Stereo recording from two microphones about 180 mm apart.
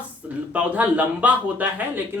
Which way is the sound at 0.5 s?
10° right (ahead or behind).